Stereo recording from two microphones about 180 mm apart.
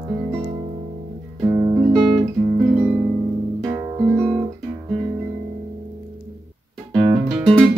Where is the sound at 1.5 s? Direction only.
25° right (ahead or behind).